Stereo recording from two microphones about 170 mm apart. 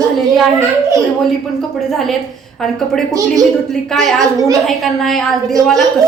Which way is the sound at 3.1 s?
20° right (ahead or behind).